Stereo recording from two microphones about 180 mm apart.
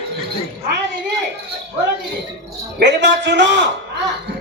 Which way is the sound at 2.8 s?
75° right (ahead or behind).